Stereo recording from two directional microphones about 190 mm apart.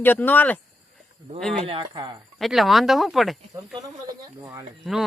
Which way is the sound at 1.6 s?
25° right (ahead or behind).